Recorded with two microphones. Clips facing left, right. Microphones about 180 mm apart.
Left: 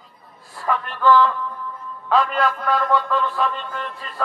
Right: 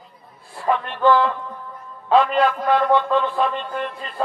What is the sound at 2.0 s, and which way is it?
Speech, 25° right (ahead or behind).